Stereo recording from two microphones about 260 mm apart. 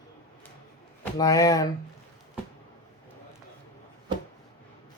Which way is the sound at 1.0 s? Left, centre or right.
Centre.